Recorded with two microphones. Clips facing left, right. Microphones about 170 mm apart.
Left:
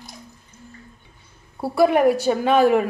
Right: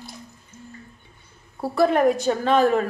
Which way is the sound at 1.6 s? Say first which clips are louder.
Left 2 dB; 10° left (ahead or behind).